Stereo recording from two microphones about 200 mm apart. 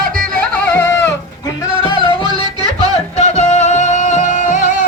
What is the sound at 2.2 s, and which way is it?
Music, 20° right (ahead or behind).